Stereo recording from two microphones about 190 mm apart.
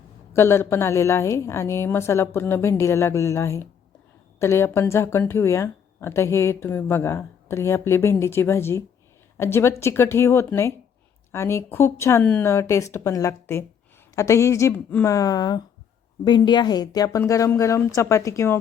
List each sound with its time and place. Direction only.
0.3 s speech: 10° left (ahead or behind)